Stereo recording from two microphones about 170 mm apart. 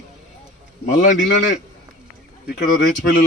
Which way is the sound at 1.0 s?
45° left (ahead or behind).